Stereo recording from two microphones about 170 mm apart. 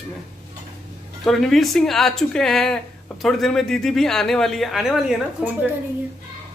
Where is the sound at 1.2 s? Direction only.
Centre (ahead or behind).